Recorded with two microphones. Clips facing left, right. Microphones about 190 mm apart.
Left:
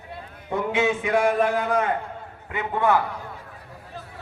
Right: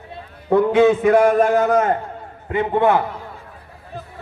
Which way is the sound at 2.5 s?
25° right (ahead or behind).